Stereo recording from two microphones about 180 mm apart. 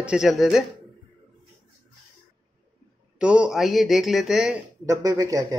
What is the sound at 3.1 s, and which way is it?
Speech, 5° right (ahead or behind).